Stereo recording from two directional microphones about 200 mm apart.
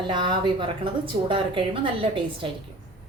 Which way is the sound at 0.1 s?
25° right (ahead or behind).